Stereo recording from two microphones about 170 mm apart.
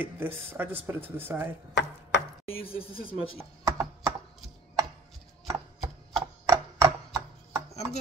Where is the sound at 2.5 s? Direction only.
35° left (ahead or behind).